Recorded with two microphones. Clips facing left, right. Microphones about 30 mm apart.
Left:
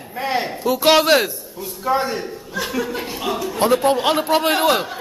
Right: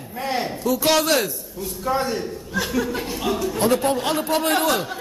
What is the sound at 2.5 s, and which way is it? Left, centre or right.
A woman's voice, centre.